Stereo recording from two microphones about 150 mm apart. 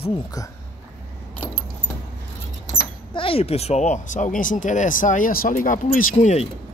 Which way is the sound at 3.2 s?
40° left (ahead or behind).